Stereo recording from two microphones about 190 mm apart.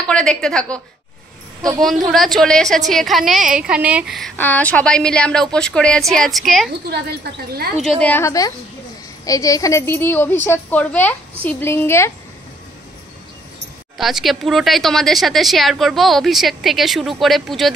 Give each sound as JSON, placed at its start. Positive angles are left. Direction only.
{"t": 0.0, "sound": "a woman's voice", "side_deg": 5}
{"t": 2.0, "sound": "a woman's voice", "side_deg": 0}
{"t": 4.4, "sound": "a woman's voice", "side_deg": 10}
{"t": 8.0, "sound": "a woman's voice", "side_deg": 10}
{"t": 13.9, "sound": "a woman's voice", "side_deg": 0}